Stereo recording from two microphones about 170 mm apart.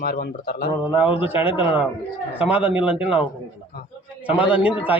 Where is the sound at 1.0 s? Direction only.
10° right (ahead or behind).